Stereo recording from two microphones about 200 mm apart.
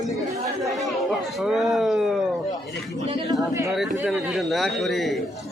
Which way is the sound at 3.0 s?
25° right (ahead or behind).